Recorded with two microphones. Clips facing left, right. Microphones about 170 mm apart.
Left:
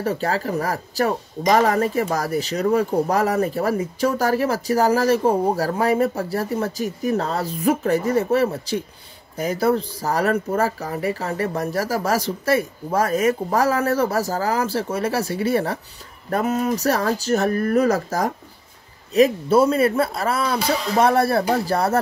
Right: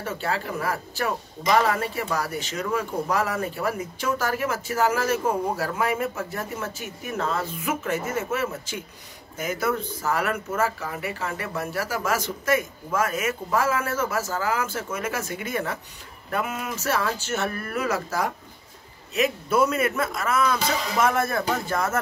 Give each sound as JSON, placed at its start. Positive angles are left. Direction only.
{"t": 0.0, "sound": "speech", "side_deg": 40}